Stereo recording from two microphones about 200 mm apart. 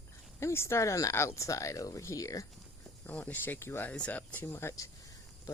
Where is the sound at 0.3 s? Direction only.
15° left (ahead or behind).